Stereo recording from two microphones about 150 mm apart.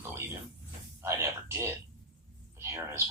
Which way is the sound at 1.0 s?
20° right (ahead or behind).